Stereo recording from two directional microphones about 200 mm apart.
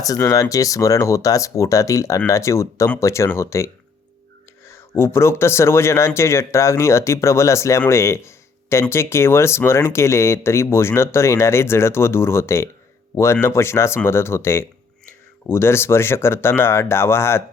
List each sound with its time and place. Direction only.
0.0 s speech: 15° left (ahead or behind)